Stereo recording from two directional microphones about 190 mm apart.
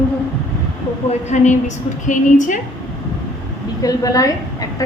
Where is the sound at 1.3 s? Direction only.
40° left (ahead or behind).